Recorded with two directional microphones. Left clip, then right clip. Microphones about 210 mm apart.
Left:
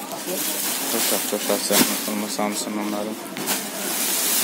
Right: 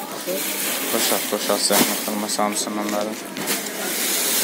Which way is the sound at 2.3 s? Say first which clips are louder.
Right 4 dB; 10° left (ahead or behind).